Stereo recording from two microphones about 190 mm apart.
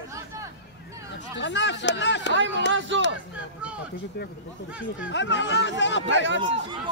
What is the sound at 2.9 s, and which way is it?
Speech, 75° right (ahead or behind).